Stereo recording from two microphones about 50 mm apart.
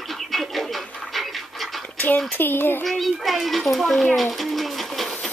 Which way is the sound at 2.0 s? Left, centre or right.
Left.